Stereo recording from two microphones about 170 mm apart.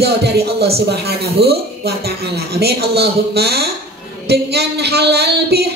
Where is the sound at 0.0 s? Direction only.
70° right (ahead or behind).